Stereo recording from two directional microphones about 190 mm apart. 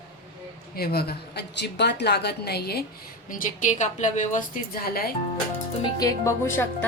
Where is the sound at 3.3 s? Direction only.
45° left (ahead or behind).